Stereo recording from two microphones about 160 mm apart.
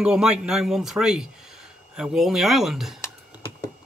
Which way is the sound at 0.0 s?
5° right (ahead or behind).